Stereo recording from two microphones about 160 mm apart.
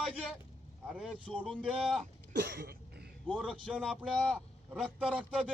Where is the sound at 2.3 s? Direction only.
90° right.